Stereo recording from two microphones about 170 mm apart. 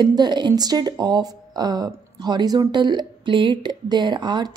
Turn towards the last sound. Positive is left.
turn(degrees=-25)  # may be behind; listen again after turning